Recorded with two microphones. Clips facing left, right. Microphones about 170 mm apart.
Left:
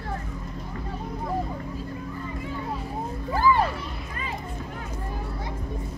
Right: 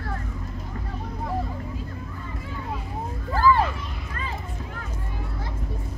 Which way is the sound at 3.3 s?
15° left (ahead or behind).